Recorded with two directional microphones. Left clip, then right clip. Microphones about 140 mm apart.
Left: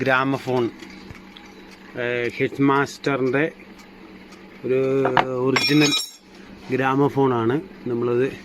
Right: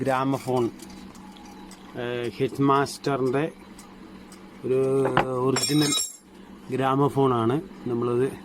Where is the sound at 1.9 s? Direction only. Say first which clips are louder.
Left 6 dB; 5° right (ahead or behind).